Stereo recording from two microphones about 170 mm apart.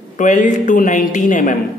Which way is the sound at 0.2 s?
50° left (ahead or behind).